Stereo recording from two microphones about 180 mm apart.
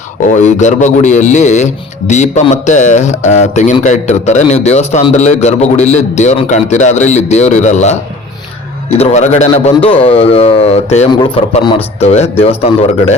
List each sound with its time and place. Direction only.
0.4 s a man's voice: 40° left (ahead or behind)